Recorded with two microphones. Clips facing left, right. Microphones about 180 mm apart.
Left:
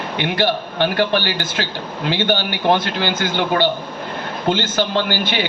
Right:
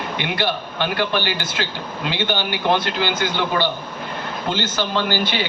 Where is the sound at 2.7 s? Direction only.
50° left (ahead or behind).